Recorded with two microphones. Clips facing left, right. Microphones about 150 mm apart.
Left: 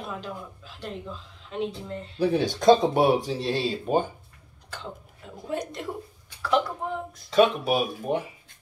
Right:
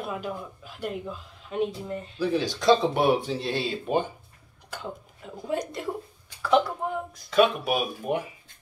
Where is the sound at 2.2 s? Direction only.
55° left (ahead or behind).